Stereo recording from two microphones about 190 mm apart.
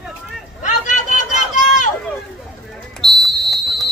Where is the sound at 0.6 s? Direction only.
40° left (ahead or behind).